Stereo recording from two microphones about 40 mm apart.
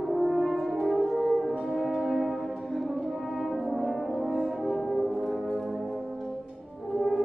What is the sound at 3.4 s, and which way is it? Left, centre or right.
Brass instrument, centre.